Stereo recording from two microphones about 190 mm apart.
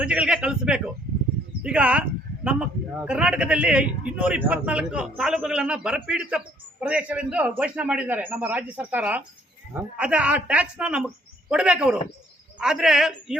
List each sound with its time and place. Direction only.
0.0 s a woman's voice: 5° right (ahead or behind)